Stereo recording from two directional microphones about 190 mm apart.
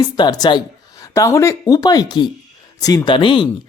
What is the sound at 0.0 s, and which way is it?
Speech, 20° left (ahead or behind).